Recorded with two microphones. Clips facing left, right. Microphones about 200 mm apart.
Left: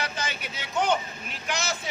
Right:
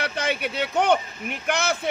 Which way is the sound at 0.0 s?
60° right (ahead or behind).